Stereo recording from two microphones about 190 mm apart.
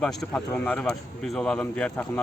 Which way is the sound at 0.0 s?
5° left (ahead or behind).